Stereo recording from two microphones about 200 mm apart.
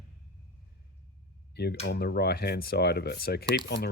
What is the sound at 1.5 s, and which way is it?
Speech, 55° left (ahead or behind).